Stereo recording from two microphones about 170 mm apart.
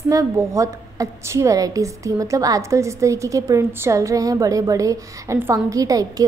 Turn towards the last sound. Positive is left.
turn(degrees=-20)  # may be behind; listen again after turning